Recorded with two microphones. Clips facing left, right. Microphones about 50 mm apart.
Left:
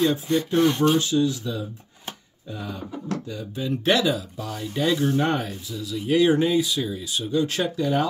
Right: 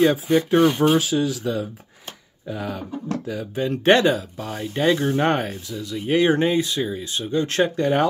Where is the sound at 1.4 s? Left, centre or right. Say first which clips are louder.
Right 5 dB; right.